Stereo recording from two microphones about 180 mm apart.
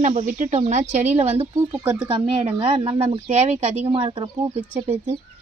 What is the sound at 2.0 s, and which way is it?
Speech, 35° right (ahead or behind).